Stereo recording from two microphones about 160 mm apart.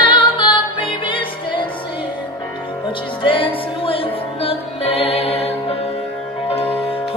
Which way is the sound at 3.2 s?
30° left (ahead or behind).